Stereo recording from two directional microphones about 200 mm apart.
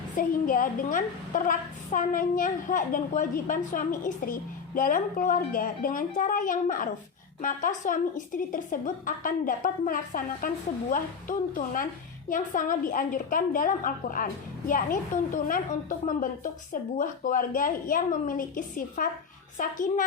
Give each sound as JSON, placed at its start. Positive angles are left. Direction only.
{"t": 0.2, "sound": "a woman's voice", "side_deg": 45}